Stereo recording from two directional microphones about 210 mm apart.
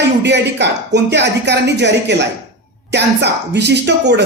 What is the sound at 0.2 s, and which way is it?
Speech, 55° right (ahead or behind).